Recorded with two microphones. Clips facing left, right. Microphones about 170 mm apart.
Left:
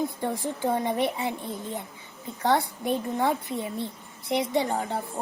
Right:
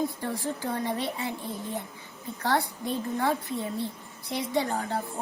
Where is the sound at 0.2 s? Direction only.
20° left (ahead or behind).